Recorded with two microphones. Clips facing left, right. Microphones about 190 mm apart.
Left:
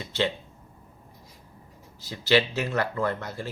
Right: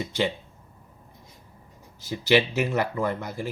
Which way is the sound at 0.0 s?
15° right (ahead or behind).